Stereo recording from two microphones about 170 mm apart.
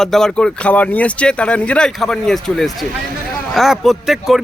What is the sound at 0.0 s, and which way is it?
Speech, 5° left (ahead or behind).